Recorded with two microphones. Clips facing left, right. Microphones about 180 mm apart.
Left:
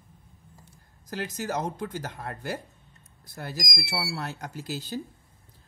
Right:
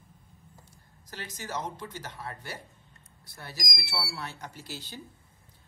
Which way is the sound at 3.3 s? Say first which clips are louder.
Left 6 dB; 45° left (ahead or behind).